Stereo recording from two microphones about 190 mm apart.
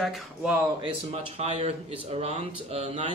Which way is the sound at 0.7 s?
25° right (ahead or behind).